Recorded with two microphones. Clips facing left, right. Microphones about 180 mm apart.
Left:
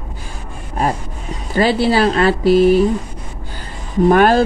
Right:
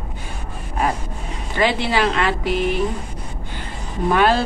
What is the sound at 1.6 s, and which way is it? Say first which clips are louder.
Speech: left 5 dB; 35° left (ahead or behind).